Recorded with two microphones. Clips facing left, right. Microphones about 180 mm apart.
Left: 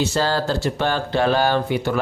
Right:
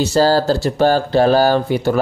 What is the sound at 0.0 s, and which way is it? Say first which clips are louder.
Speech: right 7 dB; 40° right (ahead or behind).